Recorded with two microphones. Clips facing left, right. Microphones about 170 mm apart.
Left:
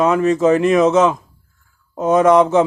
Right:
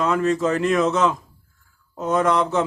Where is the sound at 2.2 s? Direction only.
90° left.